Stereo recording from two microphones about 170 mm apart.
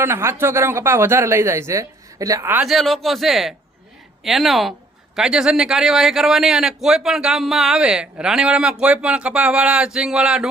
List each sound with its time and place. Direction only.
0.0 s speech: 15° right (ahead or behind)
2.6 s a man's voice: centre (ahead or behind)